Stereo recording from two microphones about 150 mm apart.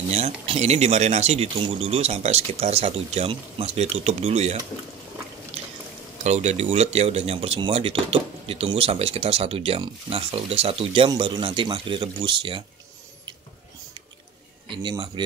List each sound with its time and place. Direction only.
0.1 s speech: 45° right (ahead or behind)
6.2 s speech: 45° right (ahead or behind)
14.7 s speech: 30° right (ahead or behind)